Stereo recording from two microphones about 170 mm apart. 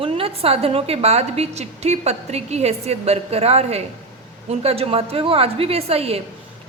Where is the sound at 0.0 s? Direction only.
35° right (ahead or behind).